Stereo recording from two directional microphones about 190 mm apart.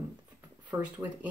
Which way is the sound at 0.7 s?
20° right (ahead or behind).